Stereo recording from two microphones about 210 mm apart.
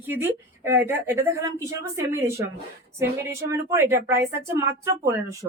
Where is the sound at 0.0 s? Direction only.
10° right (ahead or behind).